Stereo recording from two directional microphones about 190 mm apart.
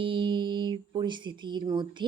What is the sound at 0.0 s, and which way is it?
Speech, 25° right (ahead or behind).